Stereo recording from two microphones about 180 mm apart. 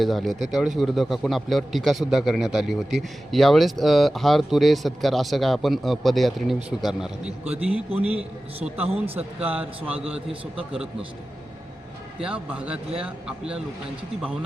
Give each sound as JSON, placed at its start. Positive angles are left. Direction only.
{"t": 0.0, "sound": "a man's voice", "side_deg": 0}
{"t": 8.7, "sound": "a man's voice", "side_deg": -35}
{"t": 9.1, "sound": "a man's voice", "side_deg": -10}
{"t": 12.2, "sound": "a man's voice", "side_deg": -5}